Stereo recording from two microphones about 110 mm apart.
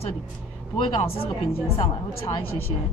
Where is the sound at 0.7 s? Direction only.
60° left (ahead or behind).